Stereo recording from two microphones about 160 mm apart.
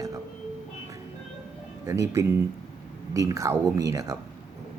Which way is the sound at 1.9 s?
20° right (ahead or behind).